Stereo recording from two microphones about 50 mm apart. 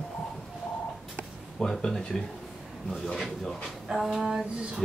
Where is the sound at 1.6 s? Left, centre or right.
Centre.